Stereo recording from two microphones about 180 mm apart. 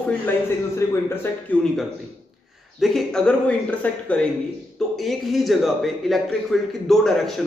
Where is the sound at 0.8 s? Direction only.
15° left (ahead or behind).